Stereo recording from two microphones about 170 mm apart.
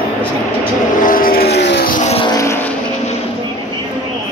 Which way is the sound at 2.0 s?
35° left (ahead or behind).